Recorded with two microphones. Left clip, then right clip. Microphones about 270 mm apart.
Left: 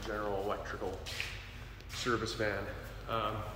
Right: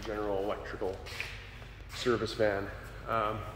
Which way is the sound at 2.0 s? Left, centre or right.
Right.